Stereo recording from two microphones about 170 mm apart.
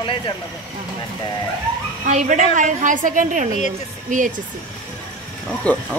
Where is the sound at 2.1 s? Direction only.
45° right (ahead or behind).